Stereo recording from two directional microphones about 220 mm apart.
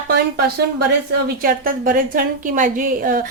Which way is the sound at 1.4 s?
40° right (ahead or behind).